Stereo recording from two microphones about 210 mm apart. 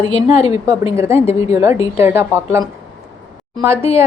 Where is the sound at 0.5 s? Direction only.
15° right (ahead or behind).